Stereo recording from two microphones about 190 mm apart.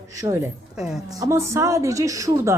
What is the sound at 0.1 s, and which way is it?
A woman's voice, 15° right (ahead or behind).